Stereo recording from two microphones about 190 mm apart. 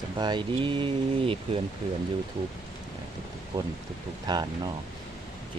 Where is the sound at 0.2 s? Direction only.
25° right (ahead or behind).